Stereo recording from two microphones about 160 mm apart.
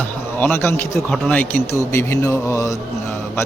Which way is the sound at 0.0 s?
15° left (ahead or behind).